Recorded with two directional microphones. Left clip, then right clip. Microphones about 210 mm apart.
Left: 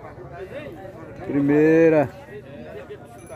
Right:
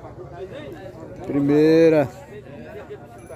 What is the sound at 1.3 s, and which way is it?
Speech, centre (ahead or behind).